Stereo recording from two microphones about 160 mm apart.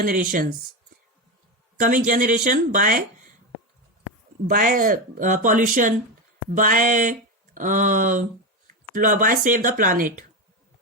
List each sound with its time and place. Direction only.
0.0 s speech: 60° right (ahead or behind)
1.8 s speech: 55° right (ahead or behind)
4.4 s speech: 60° right (ahead or behind)